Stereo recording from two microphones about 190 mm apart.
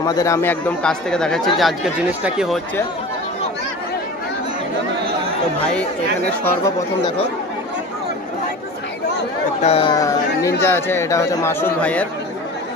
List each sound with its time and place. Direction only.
0.0 s speech: 20° left (ahead or behind); by 2.6 s 5° right (ahead or behind)
9.6 s speech: 30° left (ahead or behind)
9.9 s speech: 15° left (ahead or behind)